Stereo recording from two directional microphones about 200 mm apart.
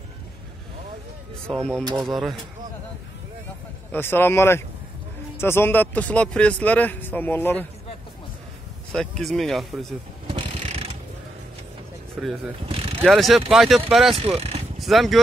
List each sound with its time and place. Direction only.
1.5 s speech: 5° left (ahead or behind)
3.9 s a man's voice: 10° left (ahead or behind)
8.9 s speech: 5° left (ahead or behind)
10.2 s pulleys: 30° right (ahead or behind)
12.2 s speech: centre (ahead or behind)
12.6 s a sound: 30° right (ahead or behind)
13.0 s speech: centre (ahead or behind)
14.1 s speech: 30° right (ahead or behind)
14.8 s speech: centre (ahead or behind)